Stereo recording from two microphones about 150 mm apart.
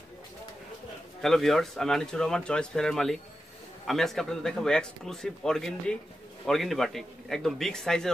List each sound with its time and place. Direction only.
1.2 s a man's voice: centre (ahead or behind)